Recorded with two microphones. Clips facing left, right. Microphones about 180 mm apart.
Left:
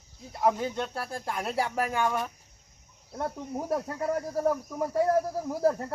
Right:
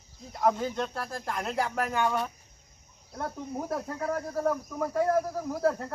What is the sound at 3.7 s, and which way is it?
Speech, 15° left (ahead or behind).